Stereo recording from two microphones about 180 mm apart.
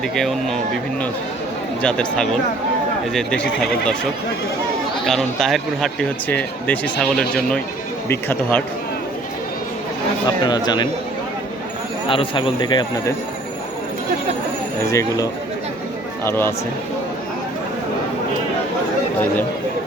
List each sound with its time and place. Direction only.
0.2 s speech: centre (ahead or behind)
1.8 s speech: 5° left (ahead or behind)
5.0 s speech: centre (ahead or behind)
10.4 s a man's voice: 25° left (ahead or behind)
12.0 s a man's voice: 30° left (ahead or behind)
14.8 s a man's voice: 20° left (ahead or behind)